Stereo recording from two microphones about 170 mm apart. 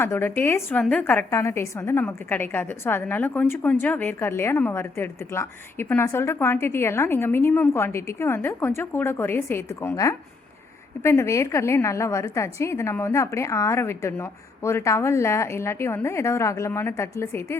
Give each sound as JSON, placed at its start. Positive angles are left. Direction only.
{"t": 0.0, "sound": "a woman's voice", "side_deg": 10}